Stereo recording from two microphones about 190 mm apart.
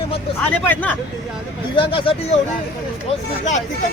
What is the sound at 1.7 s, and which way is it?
Speech, 25° left (ahead or behind).